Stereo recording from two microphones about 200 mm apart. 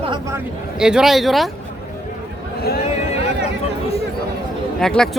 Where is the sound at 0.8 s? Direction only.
5° right (ahead or behind).